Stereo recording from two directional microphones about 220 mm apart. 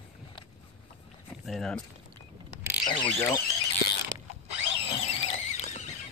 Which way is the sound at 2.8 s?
20° left (ahead or behind).